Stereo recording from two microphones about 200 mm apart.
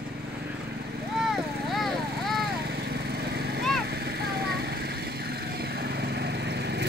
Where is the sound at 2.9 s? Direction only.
55° right (ahead or behind).